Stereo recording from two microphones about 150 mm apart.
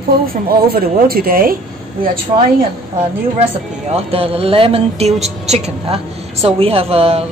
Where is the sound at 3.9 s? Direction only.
40° right (ahead or behind).